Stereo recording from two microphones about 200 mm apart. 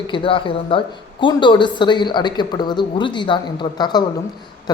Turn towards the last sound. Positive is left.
turn(degrees=20)  # may be behind; listen again after turning